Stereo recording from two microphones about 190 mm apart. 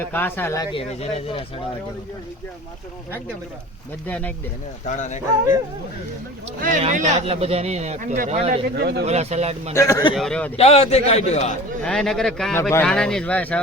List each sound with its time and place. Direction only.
0.0 s speech: 10° left (ahead or behind)
0.7 s speech: 30° left (ahead or behind)
4.0 s speech: 10° left (ahead or behind)
4.9 s a man's voice: 40° left (ahead or behind)
6.6 s speech: 45° right (ahead or behind)
8.8 s speech: 55° right (ahead or behind)
9.0 s speech: 35° right (ahead or behind)
9.7 s speech: 15° left (ahead or behind)
10.2 s speech: 5° left (ahead or behind)
10.6 s a man's voice: 35° left (ahead or behind)
11.8 s speech: 5° left (ahead or behind)